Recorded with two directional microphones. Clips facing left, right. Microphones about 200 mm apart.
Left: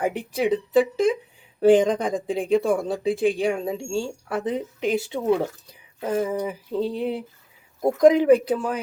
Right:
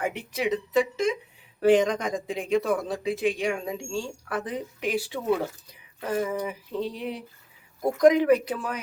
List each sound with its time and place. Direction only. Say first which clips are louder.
0.0 s speech: left 5 dB; 35° left (ahead or behind)